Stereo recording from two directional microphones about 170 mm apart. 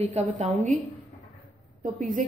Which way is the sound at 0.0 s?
45° right (ahead or behind).